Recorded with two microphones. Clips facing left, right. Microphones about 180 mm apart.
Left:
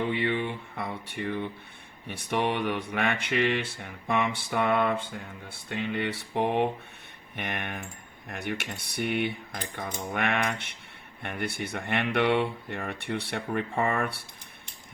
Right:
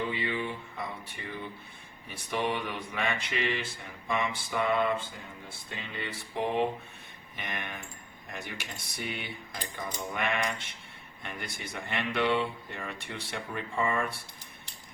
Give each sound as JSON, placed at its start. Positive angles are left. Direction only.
{"t": 0.0, "sound": "speech", "side_deg": 65}